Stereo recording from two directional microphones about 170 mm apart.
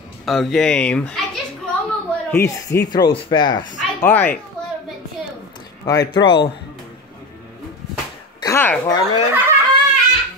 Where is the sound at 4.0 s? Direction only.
10° left (ahead or behind).